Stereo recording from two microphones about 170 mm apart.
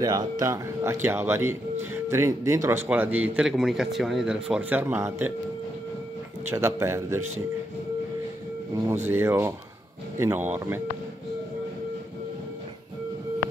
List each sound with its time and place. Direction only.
0.0 s speech: 25° right (ahead or behind)
6.5 s speech: 15° right (ahead or behind)
8.8 s speech: 15° right (ahead or behind)